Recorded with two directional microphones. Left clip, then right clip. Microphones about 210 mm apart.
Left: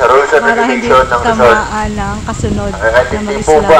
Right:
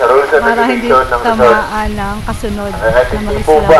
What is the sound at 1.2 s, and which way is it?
Speech, 5° left (ahead or behind).